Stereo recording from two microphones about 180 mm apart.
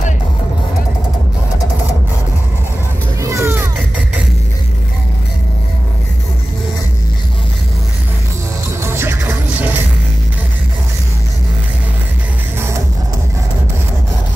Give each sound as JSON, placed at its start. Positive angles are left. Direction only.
{"t": 3.2, "sound": "music", "side_deg": -15}
{"t": 8.8, "sound": "music", "side_deg": -15}